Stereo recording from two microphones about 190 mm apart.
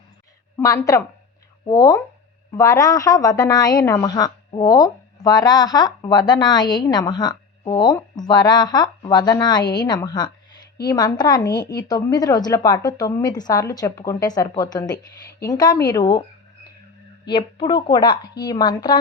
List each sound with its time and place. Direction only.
0.5 s a woman's voice: 15° left (ahead or behind)
17.2 s a woman's voice: 25° left (ahead or behind)